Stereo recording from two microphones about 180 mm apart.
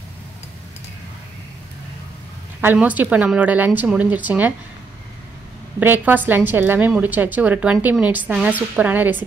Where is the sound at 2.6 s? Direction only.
10° right (ahead or behind).